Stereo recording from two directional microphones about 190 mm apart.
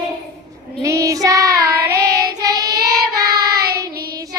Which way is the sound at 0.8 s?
15° right (ahead or behind).